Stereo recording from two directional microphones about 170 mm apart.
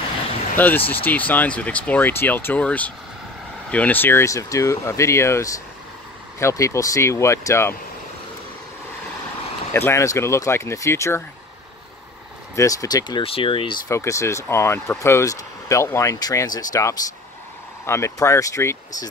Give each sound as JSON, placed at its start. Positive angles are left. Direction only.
{"t": 0.6, "sound": "speech", "side_deg": 10}
{"t": 9.8, "sound": "speech", "side_deg": 15}
{"t": 12.5, "sound": "speech", "side_deg": 20}
{"t": 13.8, "sound": "speech", "side_deg": 20}